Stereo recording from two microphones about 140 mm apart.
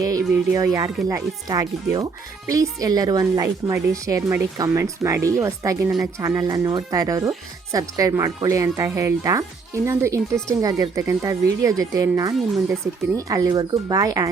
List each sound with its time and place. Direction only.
0.0 s speech: 25° right (ahead or behind)